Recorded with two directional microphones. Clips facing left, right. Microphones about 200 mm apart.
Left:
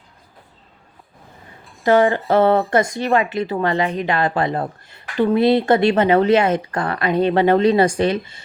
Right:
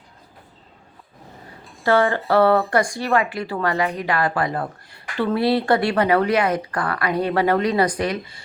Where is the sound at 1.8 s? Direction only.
20° left (ahead or behind).